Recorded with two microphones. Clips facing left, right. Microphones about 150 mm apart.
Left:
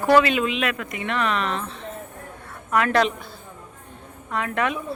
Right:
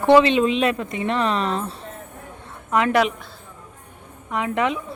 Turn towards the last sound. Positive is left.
turn(degrees=-20)  # may be behind; listen again after turning